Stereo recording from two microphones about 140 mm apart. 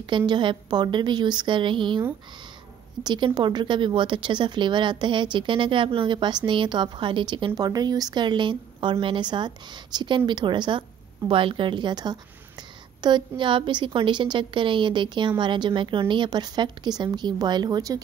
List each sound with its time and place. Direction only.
0.3 s speech: 35° right (ahead or behind)